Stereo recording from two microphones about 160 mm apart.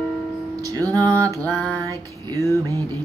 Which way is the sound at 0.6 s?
20° right (ahead or behind).